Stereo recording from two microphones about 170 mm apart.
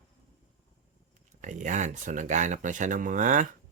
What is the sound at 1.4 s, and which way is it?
Speech, 45° right (ahead or behind).